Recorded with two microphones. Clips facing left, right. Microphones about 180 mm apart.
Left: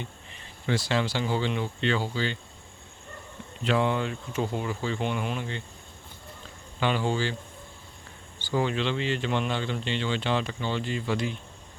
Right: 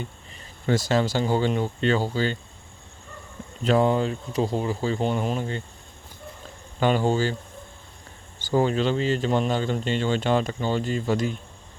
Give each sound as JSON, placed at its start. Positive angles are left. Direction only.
{"t": 0.7, "sound": "speech", "side_deg": -45}
{"t": 3.6, "sound": "speech", "side_deg": -40}
{"t": 6.7, "sound": "speech", "side_deg": -45}
{"t": 8.4, "sound": "speech", "side_deg": -40}